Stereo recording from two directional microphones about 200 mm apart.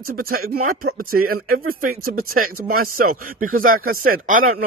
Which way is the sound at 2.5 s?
45° right (ahead or behind).